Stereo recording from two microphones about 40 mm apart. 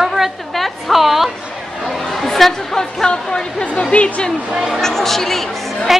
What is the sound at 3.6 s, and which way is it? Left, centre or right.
Speech, left.